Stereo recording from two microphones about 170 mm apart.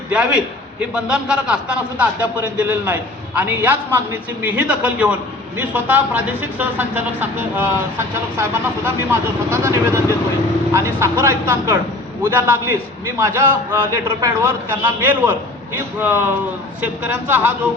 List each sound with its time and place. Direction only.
0.1 s a man's voice: 5° right (ahead or behind)
8.4 s a man's voice: 15° right (ahead or behind)